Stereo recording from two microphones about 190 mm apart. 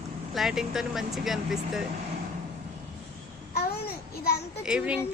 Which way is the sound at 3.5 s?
55° left (ahead or behind).